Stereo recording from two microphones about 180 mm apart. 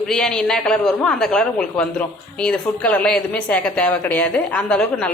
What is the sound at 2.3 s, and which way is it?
Speech, 5° left (ahead or behind).